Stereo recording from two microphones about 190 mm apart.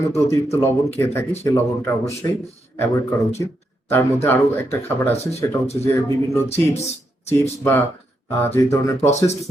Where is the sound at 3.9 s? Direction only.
10° left (ahead or behind).